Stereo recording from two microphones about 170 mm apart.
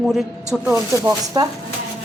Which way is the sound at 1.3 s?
30° right (ahead or behind).